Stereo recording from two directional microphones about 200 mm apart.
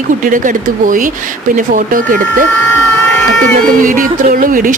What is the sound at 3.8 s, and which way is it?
Music, 40° right (ahead or behind).